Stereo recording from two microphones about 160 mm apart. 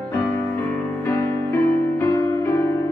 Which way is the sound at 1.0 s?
15° left (ahead or behind).